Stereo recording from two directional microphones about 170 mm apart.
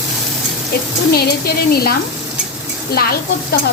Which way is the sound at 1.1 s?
65° left (ahead or behind).